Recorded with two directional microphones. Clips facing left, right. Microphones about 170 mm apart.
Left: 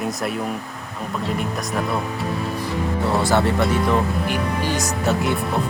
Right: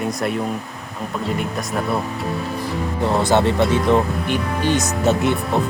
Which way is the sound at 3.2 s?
20° right (ahead or behind).